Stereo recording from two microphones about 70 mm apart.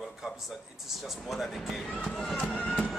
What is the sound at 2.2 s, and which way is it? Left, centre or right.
Speech, centre.